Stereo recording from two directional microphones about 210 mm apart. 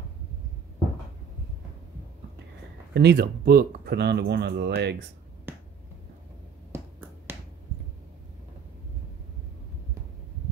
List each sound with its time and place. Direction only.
2.9 s speech: 55° right (ahead or behind)
5.5 s finger snapping: 10° right (ahead or behind)
6.7 s finger snapping: 10° right (ahead or behind)